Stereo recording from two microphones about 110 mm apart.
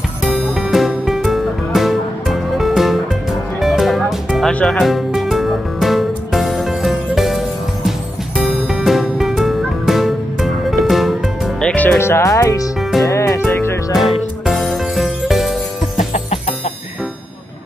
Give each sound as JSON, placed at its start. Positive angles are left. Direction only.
{"t": 0.2, "sound": "music", "side_deg": 0}
{"t": 12.0, "sound": "speech", "side_deg": 25}
{"t": 13.0, "sound": "music", "side_deg": 30}
{"t": 13.9, "sound": "music", "side_deg": 0}
{"t": 16.1, "sound": "music", "side_deg": 70}